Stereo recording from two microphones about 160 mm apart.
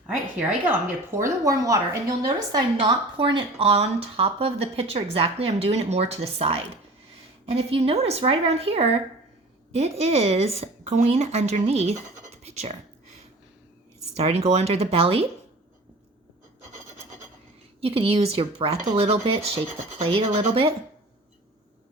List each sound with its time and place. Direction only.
1.1 s a woman's voice: 20° right (ahead or behind); by 6.6 s 40° right (ahead or behind)
7.7 s a woman's voice: 40° right (ahead or behind)
17.7 s speech: 35° right (ahead or behind)